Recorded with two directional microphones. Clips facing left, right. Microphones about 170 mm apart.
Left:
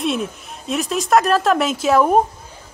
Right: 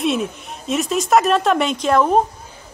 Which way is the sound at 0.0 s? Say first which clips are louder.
Right 2 dB; centre (ahead or behind).